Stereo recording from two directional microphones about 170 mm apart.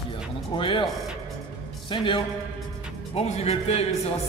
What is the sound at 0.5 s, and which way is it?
Speech, 30° left (ahead or behind).